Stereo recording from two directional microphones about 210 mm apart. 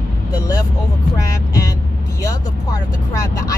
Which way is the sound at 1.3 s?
15° left (ahead or behind).